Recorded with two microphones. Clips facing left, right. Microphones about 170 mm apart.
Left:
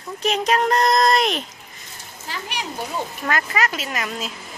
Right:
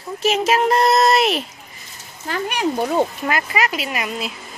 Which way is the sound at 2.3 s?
55° right (ahead or behind).